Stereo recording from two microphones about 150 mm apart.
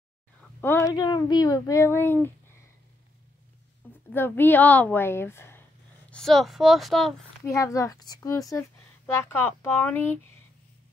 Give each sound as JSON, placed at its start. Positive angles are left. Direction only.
{"t": 0.4, "sound": "speech", "side_deg": 15}
{"t": 4.1, "sound": "a woman's voice", "side_deg": 15}
{"t": 6.0, "sound": "speech", "side_deg": 5}
{"t": 7.4, "sound": "a woman's voice", "side_deg": 20}